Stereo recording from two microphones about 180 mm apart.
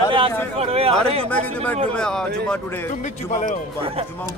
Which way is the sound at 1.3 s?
10° left (ahead or behind).